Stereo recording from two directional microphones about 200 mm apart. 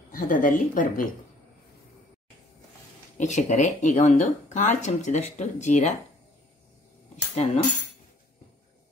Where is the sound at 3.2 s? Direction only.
35° left (ahead or behind).